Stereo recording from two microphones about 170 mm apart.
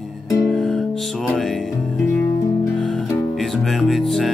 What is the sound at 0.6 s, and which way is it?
Music, 5° left (ahead or behind).